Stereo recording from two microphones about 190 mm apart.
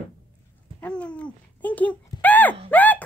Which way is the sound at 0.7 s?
5° left (ahead or behind).